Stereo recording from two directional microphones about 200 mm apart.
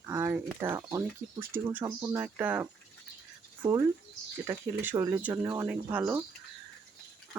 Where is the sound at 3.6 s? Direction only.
20° right (ahead or behind).